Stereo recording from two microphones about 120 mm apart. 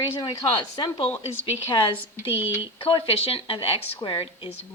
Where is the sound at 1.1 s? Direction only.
20° left (ahead or behind).